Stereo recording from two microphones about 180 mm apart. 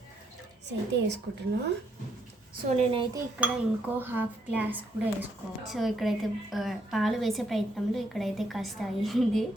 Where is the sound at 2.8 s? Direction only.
30° right (ahead or behind).